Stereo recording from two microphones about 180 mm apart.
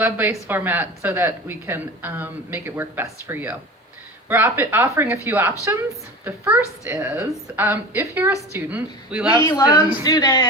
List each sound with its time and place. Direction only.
0.0 s speech: 10° right (ahead or behind)
9.4 s speech: 20° left (ahead or behind)